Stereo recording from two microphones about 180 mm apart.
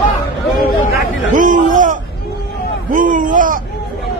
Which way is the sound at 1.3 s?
45° right (ahead or behind).